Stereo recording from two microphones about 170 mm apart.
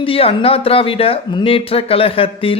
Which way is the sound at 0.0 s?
35° left (ahead or behind).